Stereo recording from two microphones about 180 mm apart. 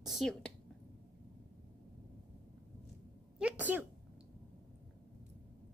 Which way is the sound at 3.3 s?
5° right (ahead or behind).